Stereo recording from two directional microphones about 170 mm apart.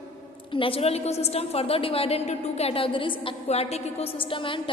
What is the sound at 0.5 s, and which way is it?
A woman's voice, 30° left (ahead or behind).